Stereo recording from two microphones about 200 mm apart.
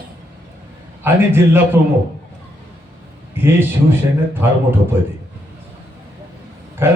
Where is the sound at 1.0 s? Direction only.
10° right (ahead or behind).